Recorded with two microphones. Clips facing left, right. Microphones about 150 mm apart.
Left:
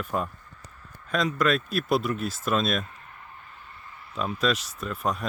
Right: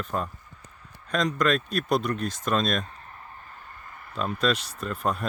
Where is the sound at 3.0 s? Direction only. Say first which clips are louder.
Right 2 dB; 35° right (ahead or behind).